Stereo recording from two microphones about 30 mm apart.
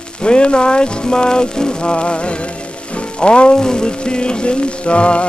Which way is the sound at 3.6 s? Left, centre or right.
Left.